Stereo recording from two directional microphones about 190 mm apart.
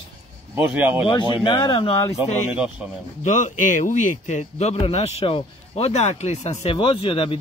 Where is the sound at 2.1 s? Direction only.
5° right (ahead or behind).